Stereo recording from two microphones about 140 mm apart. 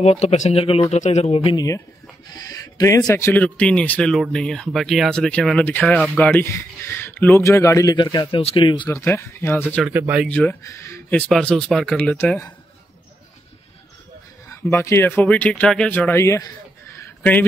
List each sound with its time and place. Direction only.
0.0 s speech: 50° left (ahead or behind)
2.2 s speech: 30° left (ahead or behind)
8.9 s speech: 20° left (ahead or behind)
9.8 s speech: 10° right (ahead or behind)
10.2 s speech: 10° left (ahead or behind)
10.6 s speech: 20° left (ahead or behind)
11.1 s speech: 5° left (ahead or behind)
14.5 s speech: 20° left (ahead or behind)